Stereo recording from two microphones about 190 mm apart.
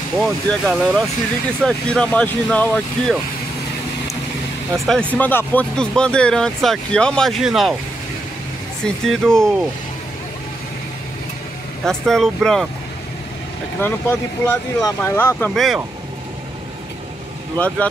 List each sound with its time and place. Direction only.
0.2 s speech: 5° left (ahead or behind)
4.8 s speech: 5° left (ahead or behind)
8.8 s speech: centre (ahead or behind)
11.8 s speech: centre (ahead or behind)
13.7 s speech: 10° left (ahead or behind)
17.6 s speech: 5° left (ahead or behind)